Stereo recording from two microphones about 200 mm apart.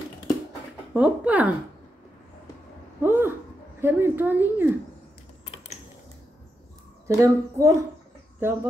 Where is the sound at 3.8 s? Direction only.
10° right (ahead or behind).